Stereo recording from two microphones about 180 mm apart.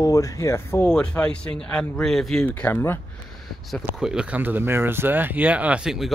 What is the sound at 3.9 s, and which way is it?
Speech, 5° right (ahead or behind).